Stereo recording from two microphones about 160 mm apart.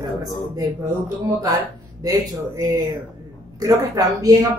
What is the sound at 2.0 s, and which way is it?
Speech, 20° right (ahead or behind).